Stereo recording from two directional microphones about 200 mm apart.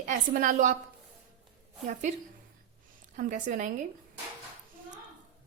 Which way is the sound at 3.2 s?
40° right (ahead or behind).